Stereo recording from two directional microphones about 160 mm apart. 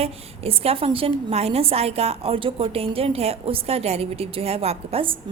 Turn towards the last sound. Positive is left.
turn(degrees=-35)  # may be behind; listen again after turning